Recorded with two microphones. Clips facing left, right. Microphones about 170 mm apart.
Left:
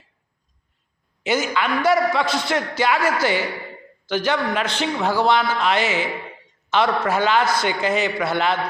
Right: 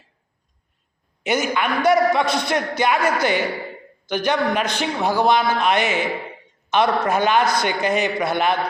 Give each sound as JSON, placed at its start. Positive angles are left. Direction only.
{"t": 1.2, "sound": "a man's voice", "side_deg": -20}